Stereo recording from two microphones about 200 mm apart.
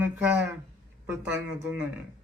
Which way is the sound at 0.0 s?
10° right (ahead or behind).